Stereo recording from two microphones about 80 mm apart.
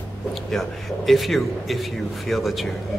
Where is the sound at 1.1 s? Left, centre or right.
Centre.